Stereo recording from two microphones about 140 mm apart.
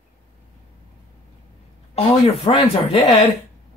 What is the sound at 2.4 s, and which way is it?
Speech, 45° left (ahead or behind).